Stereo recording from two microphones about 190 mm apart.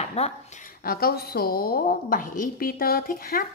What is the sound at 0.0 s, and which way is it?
Speech, 35° left (ahead or behind).